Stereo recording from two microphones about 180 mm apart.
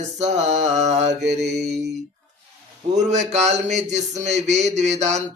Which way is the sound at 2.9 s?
40° right (ahead or behind).